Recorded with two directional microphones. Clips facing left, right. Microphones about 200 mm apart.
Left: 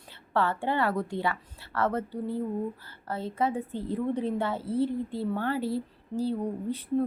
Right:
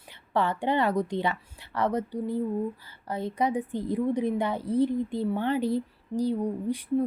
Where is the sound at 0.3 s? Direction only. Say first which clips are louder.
Right 2 dB; 15° right (ahead or behind).